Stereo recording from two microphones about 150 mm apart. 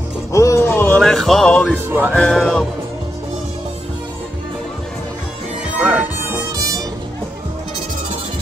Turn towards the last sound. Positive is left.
turn(degrees=-25)  # may be behind; listen again after turning